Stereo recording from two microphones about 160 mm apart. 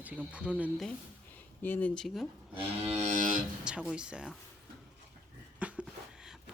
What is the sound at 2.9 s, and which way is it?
Music, 50° right (ahead or behind).